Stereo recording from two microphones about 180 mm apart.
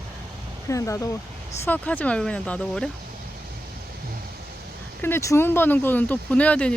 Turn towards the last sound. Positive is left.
turn(degrees=5)  # may be behind; listen again after turning